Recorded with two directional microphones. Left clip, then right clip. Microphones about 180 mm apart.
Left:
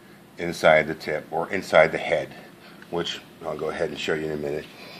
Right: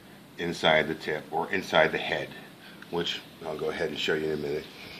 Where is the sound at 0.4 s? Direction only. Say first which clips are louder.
Left 6 dB; 50° left (ahead or behind).